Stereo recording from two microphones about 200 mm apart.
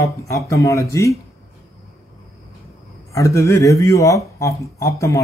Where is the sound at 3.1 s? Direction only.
15° left (ahead or behind).